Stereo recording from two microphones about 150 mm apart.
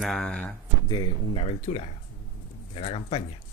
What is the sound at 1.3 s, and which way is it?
Speech, 45° left (ahead or behind).